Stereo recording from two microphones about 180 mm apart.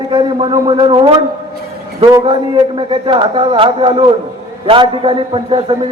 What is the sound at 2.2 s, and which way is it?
A man's voice, 30° right (ahead or behind).